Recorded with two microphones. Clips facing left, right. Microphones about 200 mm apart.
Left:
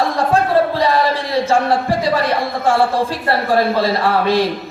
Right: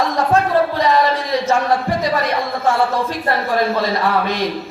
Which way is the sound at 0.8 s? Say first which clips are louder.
Even; 30° left (ahead or behind).